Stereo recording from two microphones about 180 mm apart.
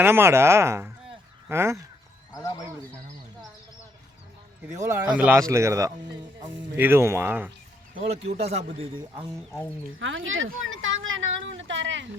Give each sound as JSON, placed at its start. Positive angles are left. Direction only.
{"t": 0.0, "sound": "speech", "side_deg": -15}
{"t": 2.3, "sound": "speech", "side_deg": 20}
{"t": 4.8, "sound": "speech", "side_deg": -15}
{"t": 7.9, "sound": "speech", "side_deg": -35}
{"t": 10.0, "sound": "a woman's voice", "side_deg": -90}